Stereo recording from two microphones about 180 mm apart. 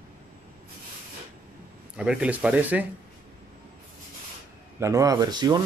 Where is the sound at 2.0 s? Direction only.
5° right (ahead or behind).